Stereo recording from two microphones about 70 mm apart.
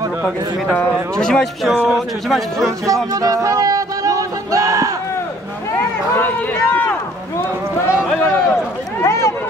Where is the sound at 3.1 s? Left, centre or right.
Right.